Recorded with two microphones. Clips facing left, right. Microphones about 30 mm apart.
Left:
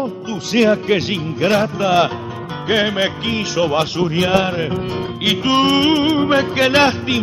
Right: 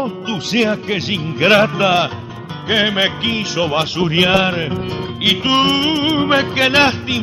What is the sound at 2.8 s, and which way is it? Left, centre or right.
Music, centre.